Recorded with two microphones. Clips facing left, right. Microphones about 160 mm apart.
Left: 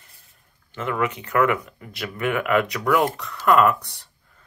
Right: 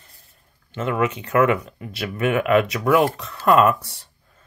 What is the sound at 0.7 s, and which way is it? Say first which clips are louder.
Speech: right 3 dB; 25° right (ahead or behind).